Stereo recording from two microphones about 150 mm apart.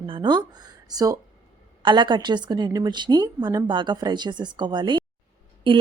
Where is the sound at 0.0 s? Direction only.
30° right (ahead or behind).